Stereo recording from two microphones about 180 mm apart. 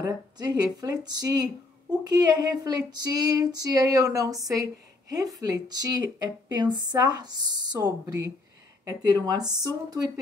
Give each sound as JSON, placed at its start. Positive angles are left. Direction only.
{"t": 0.0, "sound": "speech", "side_deg": -20}